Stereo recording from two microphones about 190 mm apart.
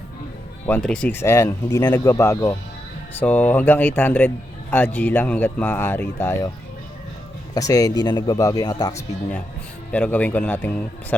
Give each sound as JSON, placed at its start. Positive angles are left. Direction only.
{"t": 0.7, "sound": "speech", "side_deg": 5}
{"t": 7.5, "sound": "speech", "side_deg": 20}
{"t": 9.9, "sound": "speech", "side_deg": 10}